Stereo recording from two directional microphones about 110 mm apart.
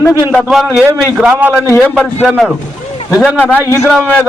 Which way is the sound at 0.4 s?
5° right (ahead or behind).